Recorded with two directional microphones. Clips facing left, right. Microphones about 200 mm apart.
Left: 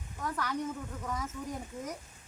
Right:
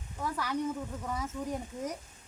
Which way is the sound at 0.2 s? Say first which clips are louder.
Right 1 dB; 10° right (ahead or behind).